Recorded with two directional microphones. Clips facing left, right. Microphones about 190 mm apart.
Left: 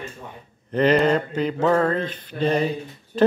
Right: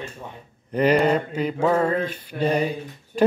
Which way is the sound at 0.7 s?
10° right (ahead or behind).